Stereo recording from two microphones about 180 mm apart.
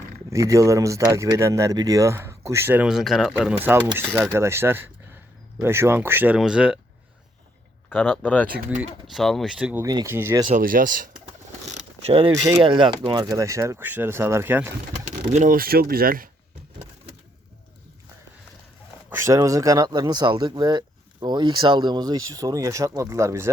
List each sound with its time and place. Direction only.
0.3 s speech: 15° right (ahead or behind)
7.9 s speech: 10° left (ahead or behind)
8.5 s speech: 5° right (ahead or behind)
9.8 s speech: 20° right (ahead or behind)
10.5 s speech: 50° right (ahead or behind)
12.0 s speech: 30° right (ahead or behind)
12.3 s speech: 15° right (ahead or behind)
15.3 s speech: 45° right (ahead or behind)
19.1 s speech: 15° right (ahead or behind)